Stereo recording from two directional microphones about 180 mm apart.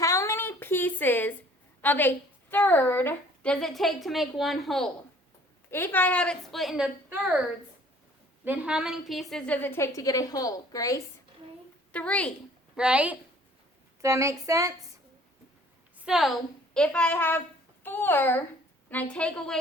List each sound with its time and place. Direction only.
0.0 s a sound: 15° left (ahead or behind)
1.8 s a woman's voice: 10° left (ahead or behind)
8.4 s a woman's voice: 5° right (ahead or behind); by 11.0 s 20° left (ahead or behind)
11.9 s a woman's voice: 5° left (ahead or behind)
12.7 s a woman's voice: 5° right (ahead or behind)
16.0 s a woman's voice: 5° right (ahead or behind)